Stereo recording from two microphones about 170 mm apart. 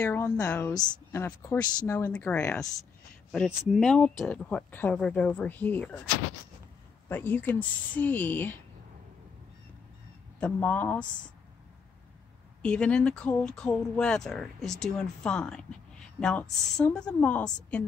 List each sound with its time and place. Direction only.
0.0 s speech: 10° left (ahead or behind)
7.1 s speech: 10° left (ahead or behind)
10.4 s speech: 10° left (ahead or behind)
12.6 s speech: 5° left (ahead or behind)